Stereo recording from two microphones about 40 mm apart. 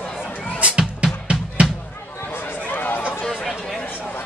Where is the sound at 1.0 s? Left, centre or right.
Right.